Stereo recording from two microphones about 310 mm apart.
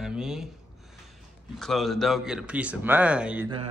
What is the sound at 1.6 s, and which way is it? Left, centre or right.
A man's voice, centre.